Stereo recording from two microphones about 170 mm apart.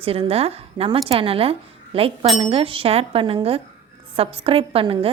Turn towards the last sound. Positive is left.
turn(degrees=-35)  # may be behind; listen again after turning